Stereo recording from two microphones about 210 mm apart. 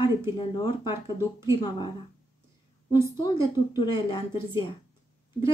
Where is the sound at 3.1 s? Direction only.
20° left (ahead or behind).